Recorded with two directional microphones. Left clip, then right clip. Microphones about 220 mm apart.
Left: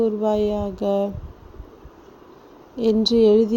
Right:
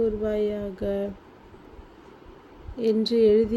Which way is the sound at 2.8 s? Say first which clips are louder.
Left 4 dB; 20° left (ahead or behind).